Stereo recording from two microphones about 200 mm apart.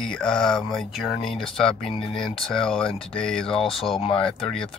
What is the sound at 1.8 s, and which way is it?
Speech, 25° left (ahead or behind).